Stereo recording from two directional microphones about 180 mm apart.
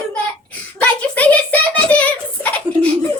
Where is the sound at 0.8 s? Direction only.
10° left (ahead or behind).